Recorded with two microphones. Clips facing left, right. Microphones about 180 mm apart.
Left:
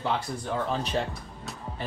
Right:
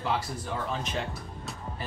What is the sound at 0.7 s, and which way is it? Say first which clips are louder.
Speech: left 4 dB; 35° left (ahead or behind).